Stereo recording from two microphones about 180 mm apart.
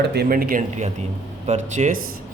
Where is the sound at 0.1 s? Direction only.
60° right (ahead or behind).